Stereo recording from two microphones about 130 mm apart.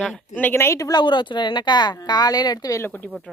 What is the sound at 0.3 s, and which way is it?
A woman's voice, 15° left (ahead or behind).